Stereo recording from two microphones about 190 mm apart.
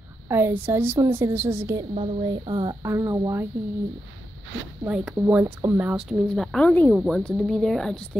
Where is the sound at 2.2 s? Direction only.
25° right (ahead or behind).